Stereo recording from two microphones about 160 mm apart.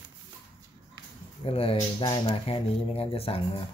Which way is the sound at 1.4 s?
35° left (ahead or behind).